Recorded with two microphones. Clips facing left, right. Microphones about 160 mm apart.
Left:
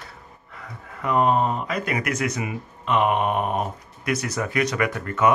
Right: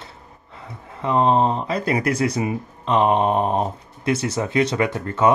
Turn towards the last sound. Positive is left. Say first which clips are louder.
# right 2 dB
turn(degrees=-30)  # may be behind; listen again after turning